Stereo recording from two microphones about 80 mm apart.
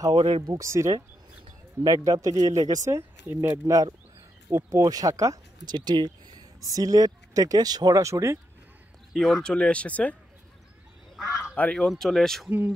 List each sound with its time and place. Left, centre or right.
0.0 s speech: right
0.7 s speech: right
1.8 s speech: right
2.9 s speech: right
4.6 s speech: right
5.7 s speech: right
6.6 s speech: right
8.0 s speech: right
9.1 s speech: centre
11.5 s speech: centre
11.8 s speech: centre
12.4 s speech: centre